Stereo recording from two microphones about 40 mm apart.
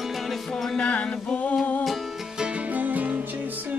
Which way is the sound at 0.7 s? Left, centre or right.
Left.